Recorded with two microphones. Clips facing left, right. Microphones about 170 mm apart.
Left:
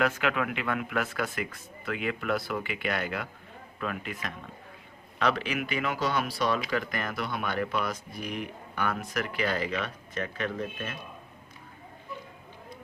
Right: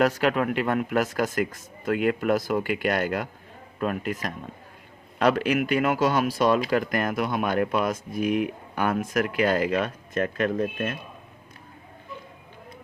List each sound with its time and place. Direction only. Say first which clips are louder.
0.0 s speech: right 6 dB; 40° right (ahead or behind)
5.5 s speech: right 8 dB; 45° right (ahead or behind)